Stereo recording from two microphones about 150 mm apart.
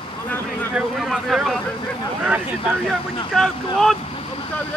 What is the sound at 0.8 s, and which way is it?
Boat, centre (ahead or behind).